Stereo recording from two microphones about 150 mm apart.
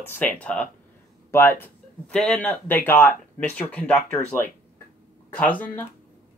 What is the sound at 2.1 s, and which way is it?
Speech, 5° left (ahead or behind).